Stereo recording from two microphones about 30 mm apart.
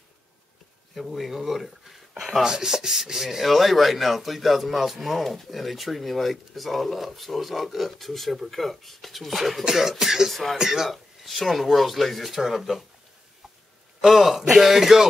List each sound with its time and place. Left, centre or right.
0.9 s speech: centre
2.4 s rub: centre
3.4 s speech: centre
4.9 s rub: centre
5.2 s speech: centre
9.7 s rub: centre
10.2 s speech: centre
10.6 s rub: centre
10.9 s speech: centre
14.0 s speech: centre
14.3 s rub: centre